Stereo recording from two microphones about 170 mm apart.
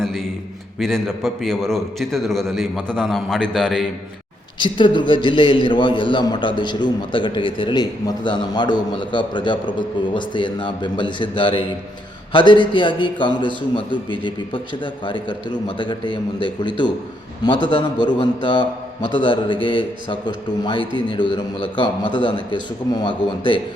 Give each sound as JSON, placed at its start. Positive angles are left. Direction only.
{"t": 0.0, "sound": "a sound", "side_deg": 0}
{"t": 0.8, "sound": "a man's voice", "side_deg": 0}
{"t": 4.6, "sound": "a man's voice", "side_deg": 30}